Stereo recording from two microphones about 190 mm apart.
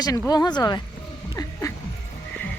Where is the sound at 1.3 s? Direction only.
20° left (ahead or behind).